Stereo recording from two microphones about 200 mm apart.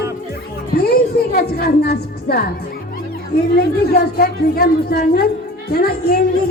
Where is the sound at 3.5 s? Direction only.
50° left (ahead or behind).